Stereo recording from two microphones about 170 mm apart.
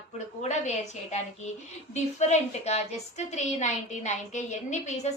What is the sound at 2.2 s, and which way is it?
A woman's voice, 40° left (ahead or behind).